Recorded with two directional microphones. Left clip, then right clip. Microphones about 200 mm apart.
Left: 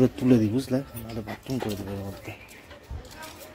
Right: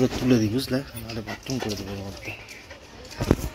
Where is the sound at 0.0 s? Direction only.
20° left (ahead or behind).